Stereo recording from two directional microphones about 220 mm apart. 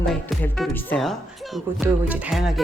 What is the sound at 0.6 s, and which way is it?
Speech, 5° left (ahead or behind).